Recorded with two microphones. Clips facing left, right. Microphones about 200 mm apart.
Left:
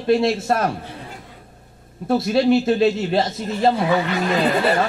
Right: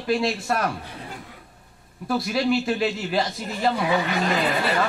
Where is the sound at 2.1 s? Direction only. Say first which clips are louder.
Left 6 dB; 25° left (ahead or behind).